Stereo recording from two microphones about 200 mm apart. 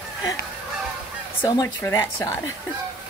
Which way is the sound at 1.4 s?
20° left (ahead or behind).